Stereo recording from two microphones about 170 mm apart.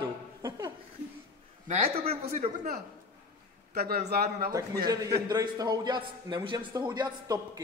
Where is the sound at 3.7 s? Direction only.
65° right (ahead or behind).